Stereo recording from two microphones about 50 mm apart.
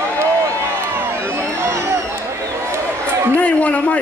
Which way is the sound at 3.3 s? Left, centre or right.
Left.